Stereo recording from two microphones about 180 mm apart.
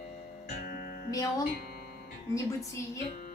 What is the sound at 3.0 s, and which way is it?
Music, 45° left (ahead or behind).